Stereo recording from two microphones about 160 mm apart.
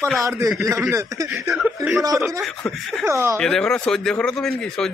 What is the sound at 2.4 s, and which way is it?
Speech, 5° left (ahead or behind).